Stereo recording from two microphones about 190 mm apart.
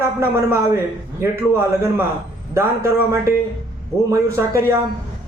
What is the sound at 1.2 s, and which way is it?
A man's voice, 10° right (ahead or behind).